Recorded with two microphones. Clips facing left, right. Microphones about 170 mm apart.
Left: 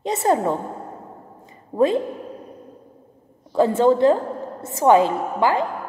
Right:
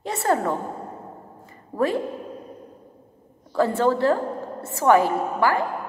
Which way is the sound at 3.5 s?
20° left (ahead or behind).